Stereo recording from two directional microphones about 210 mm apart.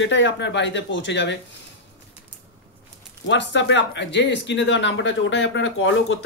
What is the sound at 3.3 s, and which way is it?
Speech, 60° left (ahead or behind).